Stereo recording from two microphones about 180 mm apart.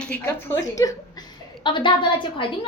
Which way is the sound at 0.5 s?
20° left (ahead or behind).